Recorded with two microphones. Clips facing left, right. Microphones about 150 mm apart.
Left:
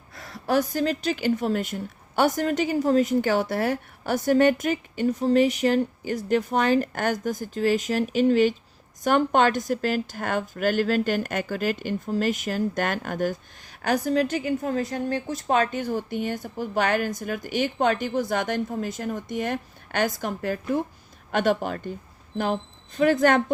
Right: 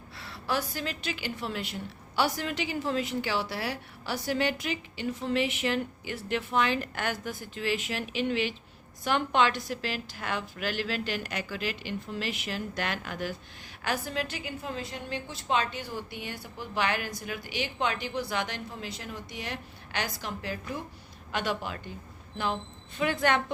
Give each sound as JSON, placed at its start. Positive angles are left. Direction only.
{"t": 0.2, "sound": "a woman's voice", "side_deg": 45}
{"t": 23.0, "sound": "a woman's voice", "side_deg": 45}